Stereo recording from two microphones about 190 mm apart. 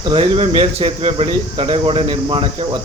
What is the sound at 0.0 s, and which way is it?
Speech, 30° right (ahead or behind).